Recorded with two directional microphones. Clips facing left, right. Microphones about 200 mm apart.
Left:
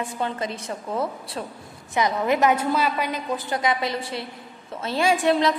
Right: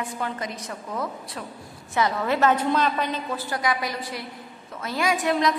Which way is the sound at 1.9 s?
15° left (ahead or behind).